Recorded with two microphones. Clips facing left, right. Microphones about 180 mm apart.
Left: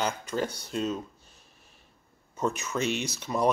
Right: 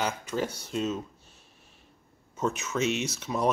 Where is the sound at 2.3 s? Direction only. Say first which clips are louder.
Even; centre (ahead or behind).